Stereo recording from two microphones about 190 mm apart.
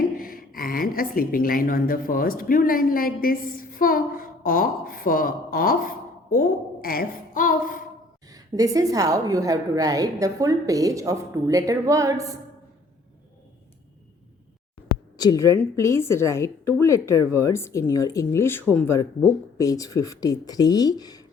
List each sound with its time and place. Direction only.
0.2 s a woman's voice: 50° left (ahead or behind)
8.3 s a woman's voice: 20° right (ahead or behind)
15.2 s a woman's voice: 20° left (ahead or behind)